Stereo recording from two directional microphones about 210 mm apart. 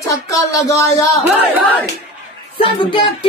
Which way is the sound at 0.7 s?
15° left (ahead or behind).